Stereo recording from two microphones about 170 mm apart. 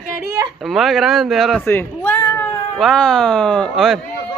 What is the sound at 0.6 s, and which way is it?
A man's voice, centre (ahead or behind).